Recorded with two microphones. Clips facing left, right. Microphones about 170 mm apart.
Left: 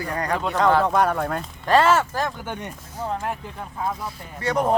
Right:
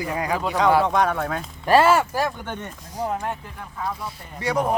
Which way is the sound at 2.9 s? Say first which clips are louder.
Right 2 dB; 15° right (ahead or behind).